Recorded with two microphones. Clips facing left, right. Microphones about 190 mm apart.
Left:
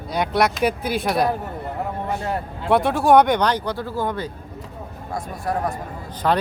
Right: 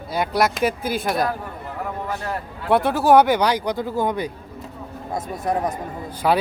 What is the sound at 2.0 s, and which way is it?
Speech, 25° left (ahead or behind).